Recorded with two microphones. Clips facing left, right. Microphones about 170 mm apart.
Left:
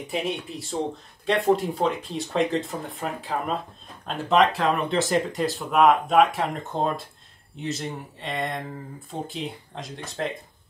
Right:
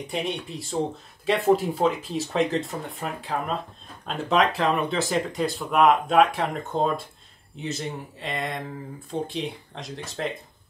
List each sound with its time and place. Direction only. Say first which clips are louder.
0.0 s speech: left 1 dB; centre (ahead or behind)